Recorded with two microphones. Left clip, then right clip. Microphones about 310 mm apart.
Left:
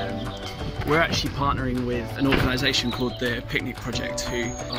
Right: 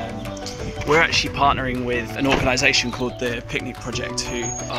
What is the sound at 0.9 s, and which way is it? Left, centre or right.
Speech, centre.